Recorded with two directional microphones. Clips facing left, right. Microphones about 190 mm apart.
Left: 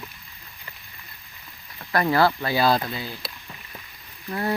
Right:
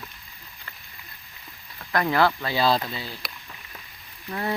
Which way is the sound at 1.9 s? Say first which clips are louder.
Left 2 dB; 10° left (ahead or behind).